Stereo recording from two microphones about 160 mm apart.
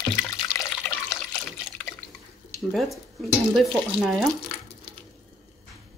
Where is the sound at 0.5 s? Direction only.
15° left (ahead or behind).